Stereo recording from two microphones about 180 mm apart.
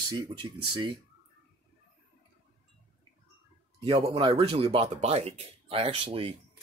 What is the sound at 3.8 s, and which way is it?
Speech, 30° right (ahead or behind).